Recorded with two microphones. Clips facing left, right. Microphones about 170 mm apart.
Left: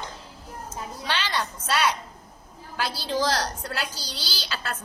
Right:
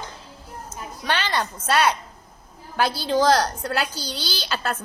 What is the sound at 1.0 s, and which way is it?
A woman's voice, 55° right (ahead or behind).